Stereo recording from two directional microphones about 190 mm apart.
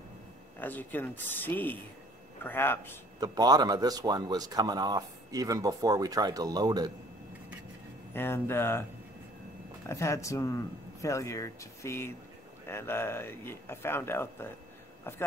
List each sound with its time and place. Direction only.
0.6 s speech: 10° left (ahead or behind)
3.2 s speech: 20° right (ahead or behind)
8.1 s speech: 10° left (ahead or behind)
9.8 s speech: 15° left (ahead or behind)